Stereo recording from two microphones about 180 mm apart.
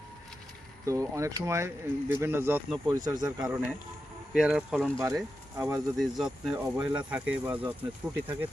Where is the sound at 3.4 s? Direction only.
10° right (ahead or behind).